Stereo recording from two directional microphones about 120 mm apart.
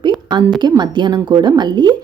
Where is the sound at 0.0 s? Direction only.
40° right (ahead or behind).